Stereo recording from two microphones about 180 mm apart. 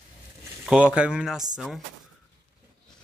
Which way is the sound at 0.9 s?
5° right (ahead or behind).